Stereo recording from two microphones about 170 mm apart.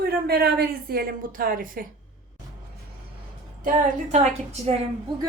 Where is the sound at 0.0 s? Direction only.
65° right (ahead or behind).